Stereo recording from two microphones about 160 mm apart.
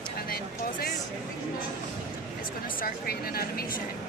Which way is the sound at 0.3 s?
75° left (ahead or behind).